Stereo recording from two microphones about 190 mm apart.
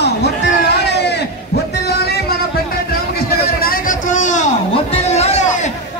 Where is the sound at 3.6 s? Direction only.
45° left (ahead or behind).